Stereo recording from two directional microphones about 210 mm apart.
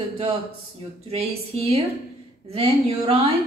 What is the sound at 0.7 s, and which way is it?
A woman's voice, 30° right (ahead or behind).